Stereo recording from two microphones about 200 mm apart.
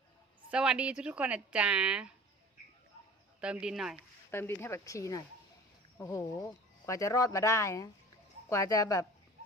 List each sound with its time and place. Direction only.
0.5 s a woman's voice: 5° right (ahead or behind)
3.4 s a woman's voice: 5° right (ahead or behind)
4.3 s speech: 10° left (ahead or behind)